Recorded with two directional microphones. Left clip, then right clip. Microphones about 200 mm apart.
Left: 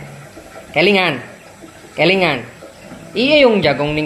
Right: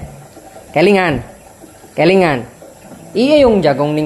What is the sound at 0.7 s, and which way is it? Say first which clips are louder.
Speech: right 2 dB; 45° right (ahead or behind).